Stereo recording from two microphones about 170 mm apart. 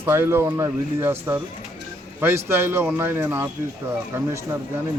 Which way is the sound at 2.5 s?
15° right (ahead or behind).